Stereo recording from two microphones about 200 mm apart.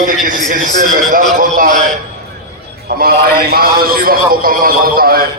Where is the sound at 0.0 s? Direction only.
40° right (ahead or behind).